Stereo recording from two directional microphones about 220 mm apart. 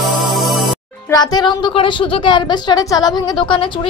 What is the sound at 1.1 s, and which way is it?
A woman's voice, 15° left (ahead or behind).